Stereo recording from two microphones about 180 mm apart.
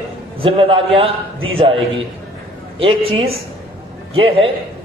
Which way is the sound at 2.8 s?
30° right (ahead or behind).